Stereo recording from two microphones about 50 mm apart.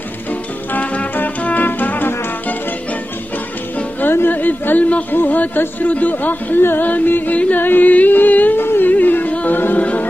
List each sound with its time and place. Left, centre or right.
0.3 s music: left
4.1 s a sound: left
5.1 s music: left